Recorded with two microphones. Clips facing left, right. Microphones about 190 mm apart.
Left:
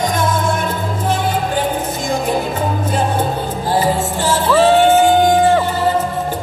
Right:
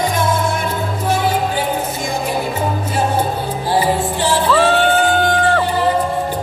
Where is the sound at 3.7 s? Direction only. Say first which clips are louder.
Even; 45° left (ahead or behind).